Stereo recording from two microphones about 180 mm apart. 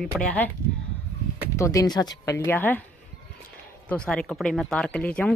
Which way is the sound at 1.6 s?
20° left (ahead or behind).